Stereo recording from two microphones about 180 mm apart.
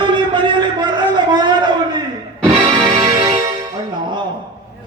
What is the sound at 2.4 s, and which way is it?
Music, 25° right (ahead or behind).